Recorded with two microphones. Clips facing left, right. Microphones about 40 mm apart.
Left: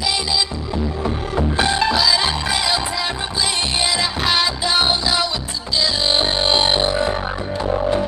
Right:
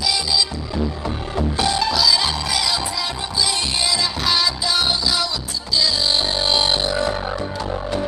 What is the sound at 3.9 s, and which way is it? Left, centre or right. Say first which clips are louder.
Music: even; left.